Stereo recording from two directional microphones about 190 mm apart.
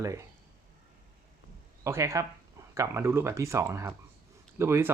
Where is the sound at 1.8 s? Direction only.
15° right (ahead or behind).